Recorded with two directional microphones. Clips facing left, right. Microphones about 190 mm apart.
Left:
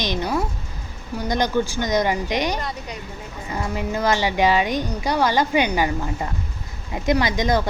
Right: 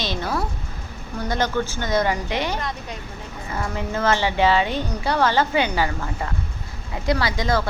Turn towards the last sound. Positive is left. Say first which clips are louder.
# left 2 dB
turn(degrees=20)  # may be behind; listen again after turning